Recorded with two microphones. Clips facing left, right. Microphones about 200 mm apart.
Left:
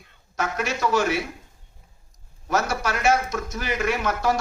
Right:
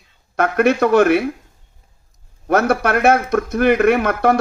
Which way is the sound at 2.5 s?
60° right (ahead or behind).